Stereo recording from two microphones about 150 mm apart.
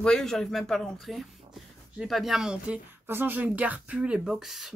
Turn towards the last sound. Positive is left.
turn(degrees=0)  # may be behind; listen again after turning